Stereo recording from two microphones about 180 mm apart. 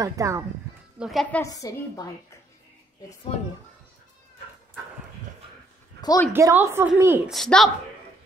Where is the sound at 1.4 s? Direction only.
20° left (ahead or behind).